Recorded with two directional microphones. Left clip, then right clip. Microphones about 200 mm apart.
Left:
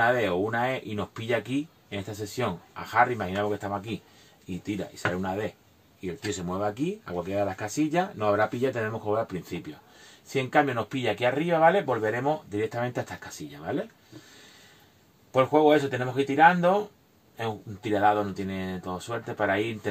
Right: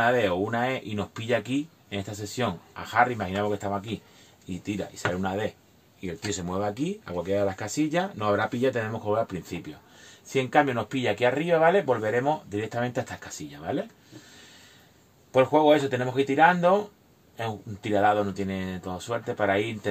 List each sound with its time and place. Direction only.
0.0 s speech: 35° right (ahead or behind)
10.5 s speech: 35° right (ahead or behind)
15.3 s speech: 40° right (ahead or behind)